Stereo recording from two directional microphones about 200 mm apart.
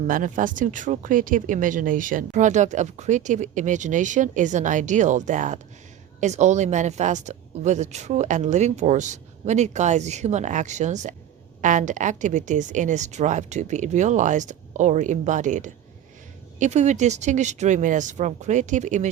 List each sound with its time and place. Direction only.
0.1 s speech: 40° right (ahead or behind)